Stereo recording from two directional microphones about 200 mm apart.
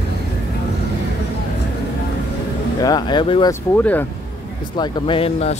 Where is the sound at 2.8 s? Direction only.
20° left (ahead or behind).